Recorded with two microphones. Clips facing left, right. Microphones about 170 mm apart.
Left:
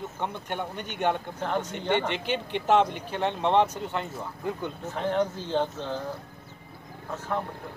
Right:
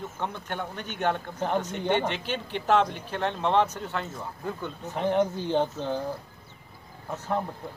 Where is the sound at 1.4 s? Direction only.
15° right (ahead or behind).